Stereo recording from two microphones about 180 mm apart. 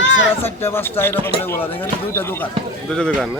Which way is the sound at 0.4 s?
10° left (ahead or behind).